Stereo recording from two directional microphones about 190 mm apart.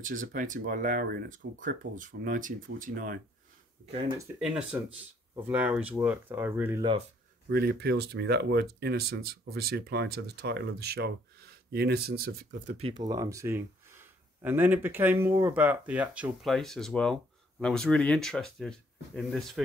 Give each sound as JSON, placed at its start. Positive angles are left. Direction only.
{"t": 0.3, "sound": "speech", "side_deg": -45}
{"t": 4.4, "sound": "speech", "side_deg": -5}
{"t": 7.4, "sound": "speech", "side_deg": -55}
{"t": 12.7, "sound": "speech", "side_deg": -25}